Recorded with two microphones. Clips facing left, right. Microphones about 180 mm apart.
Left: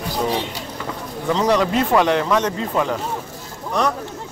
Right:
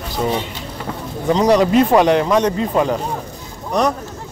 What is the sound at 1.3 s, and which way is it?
Speech, 15° right (ahead or behind).